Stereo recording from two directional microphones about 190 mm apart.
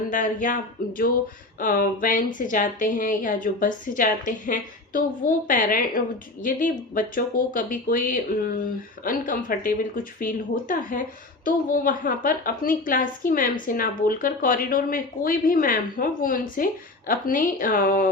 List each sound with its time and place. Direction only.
0.1 s a woman's voice: 40° left (ahead or behind)
1.5 s a woman's voice: 45° left (ahead or behind)